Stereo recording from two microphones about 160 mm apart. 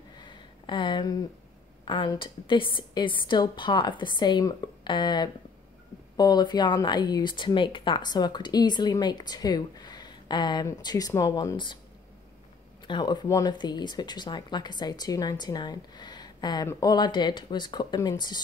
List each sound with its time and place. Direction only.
0.2 s a sound: 30° left (ahead or behind)
1.9 s speech: 30° left (ahead or behind)
12.8 s speech: 30° left (ahead or behind)